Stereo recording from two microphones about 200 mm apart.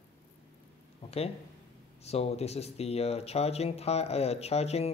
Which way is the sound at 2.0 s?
30° left (ahead or behind).